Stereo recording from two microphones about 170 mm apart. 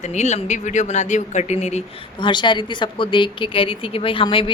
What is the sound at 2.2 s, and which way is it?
A woman's voice, 30° left (ahead or behind).